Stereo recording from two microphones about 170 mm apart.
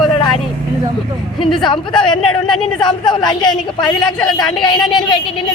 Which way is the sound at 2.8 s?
25° left (ahead or behind).